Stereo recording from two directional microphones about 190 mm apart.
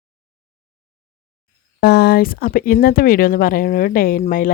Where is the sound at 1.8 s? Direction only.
55° left (ahead or behind).